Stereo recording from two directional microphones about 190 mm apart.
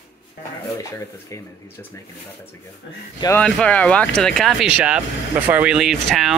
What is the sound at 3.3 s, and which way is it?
Speech, 5° left (ahead or behind).